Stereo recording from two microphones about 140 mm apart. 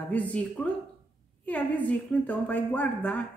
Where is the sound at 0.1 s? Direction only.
10° left (ahead or behind).